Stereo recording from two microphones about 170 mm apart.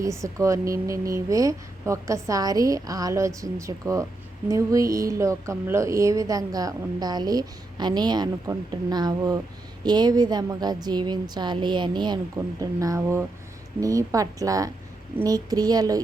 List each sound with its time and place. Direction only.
0.0 s a woman's voice: 20° right (ahead or behind)